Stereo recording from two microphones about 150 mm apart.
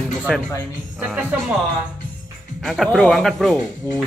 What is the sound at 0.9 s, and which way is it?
Speech, 10° right (ahead or behind).